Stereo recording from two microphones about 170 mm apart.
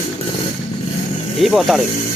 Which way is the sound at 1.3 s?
Centre (ahead or behind).